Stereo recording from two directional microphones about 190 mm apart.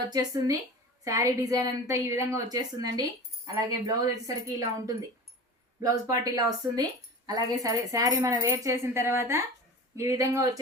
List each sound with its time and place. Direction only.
0.1 s speech: 20° right (ahead or behind)